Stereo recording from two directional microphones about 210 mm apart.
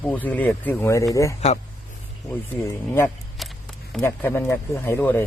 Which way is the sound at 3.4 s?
Centre (ahead or behind).